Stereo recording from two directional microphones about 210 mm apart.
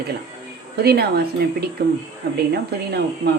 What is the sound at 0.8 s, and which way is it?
A woman's voice, 50° right (ahead or behind).